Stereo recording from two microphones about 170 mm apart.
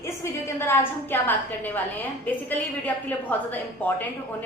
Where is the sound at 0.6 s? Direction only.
15° left (ahead or behind).